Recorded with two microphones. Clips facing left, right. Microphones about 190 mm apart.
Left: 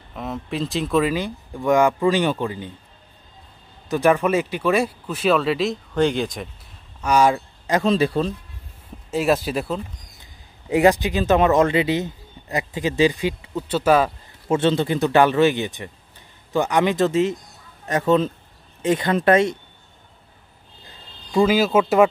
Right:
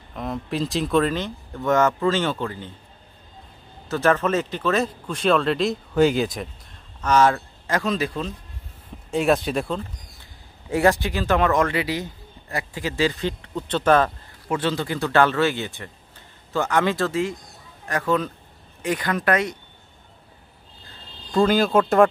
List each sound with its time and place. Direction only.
0.1 s a man's voice: centre (ahead or behind)
3.9 s speech: 15° left (ahead or behind); by 6.5 s centre (ahead or behind)
7.0 s speech: 10° left (ahead or behind); by 8.3 s 30° left (ahead or behind)
9.1 s speech: centre (ahead or behind)
10.7 s a man's voice: 20° left (ahead or behind)
14.5 s a man's voice: 25° left (ahead or behind)
21.3 s speech: 5° left (ahead or behind)